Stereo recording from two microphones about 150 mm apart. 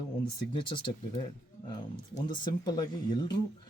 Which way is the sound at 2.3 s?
30° left (ahead or behind).